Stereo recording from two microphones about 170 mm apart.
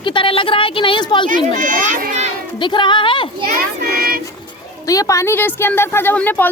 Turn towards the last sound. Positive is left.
turn(degrees=10)  # may be behind; listen again after turning